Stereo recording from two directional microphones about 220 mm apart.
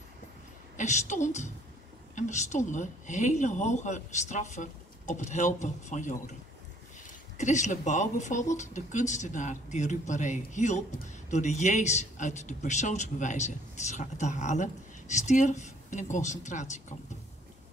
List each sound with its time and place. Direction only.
0.7 s speech: 35° left (ahead or behind)
7.3 s speech: 35° left (ahead or behind)